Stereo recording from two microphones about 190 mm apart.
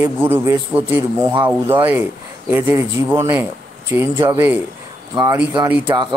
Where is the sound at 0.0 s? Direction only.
10° right (ahead or behind).